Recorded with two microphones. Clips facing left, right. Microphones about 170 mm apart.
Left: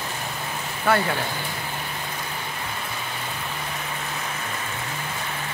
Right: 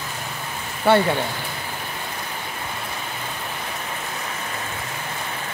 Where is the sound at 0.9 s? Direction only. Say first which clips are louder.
Right 5 dB; 30° right (ahead or behind).